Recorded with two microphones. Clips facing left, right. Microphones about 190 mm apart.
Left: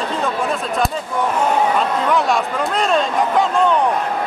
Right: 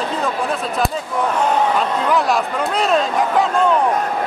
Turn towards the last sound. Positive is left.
turn(degrees=0)  # may be behind; listen again after turning